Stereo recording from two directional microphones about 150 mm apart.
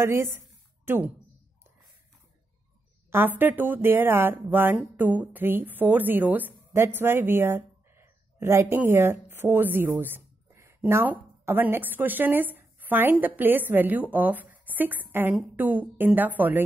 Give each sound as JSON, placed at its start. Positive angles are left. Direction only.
{"t": 0.0, "sound": "a woman's voice", "side_deg": -15}
{"t": 3.1, "sound": "speech", "side_deg": -15}